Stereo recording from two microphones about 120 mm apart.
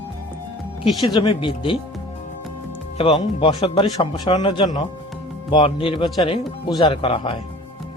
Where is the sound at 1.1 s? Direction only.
45° left (ahead or behind).